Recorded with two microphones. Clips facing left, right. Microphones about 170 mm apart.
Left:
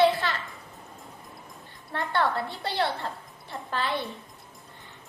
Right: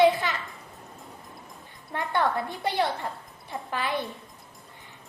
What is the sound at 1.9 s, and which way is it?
A woman's voice, 15° right (ahead or behind).